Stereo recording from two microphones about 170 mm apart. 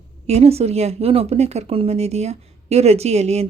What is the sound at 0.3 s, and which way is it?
Speech, 40° right (ahead or behind).